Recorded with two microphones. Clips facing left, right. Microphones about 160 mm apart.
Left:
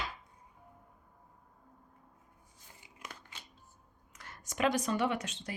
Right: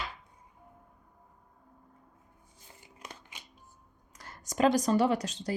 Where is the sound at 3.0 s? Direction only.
15° right (ahead or behind).